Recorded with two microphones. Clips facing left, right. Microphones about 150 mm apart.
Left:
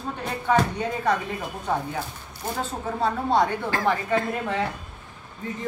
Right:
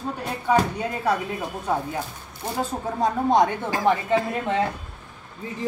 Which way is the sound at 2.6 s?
15° right (ahead or behind).